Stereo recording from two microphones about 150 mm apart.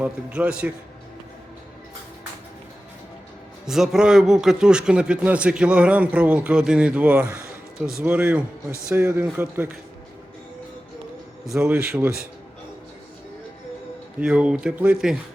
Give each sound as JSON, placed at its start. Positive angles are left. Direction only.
{"t": 0.0, "sound": "a man's voice", "side_deg": -10}
{"t": 3.7, "sound": "a man's voice", "side_deg": -5}
{"t": 11.5, "sound": "a man's voice", "side_deg": -5}
{"t": 14.2, "sound": "a man's voice", "side_deg": -5}